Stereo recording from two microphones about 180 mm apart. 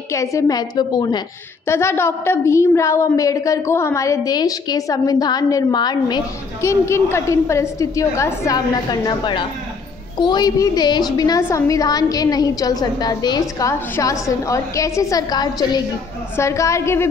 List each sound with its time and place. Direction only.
0.1 s a woman's voice: 15° left (ahead or behind)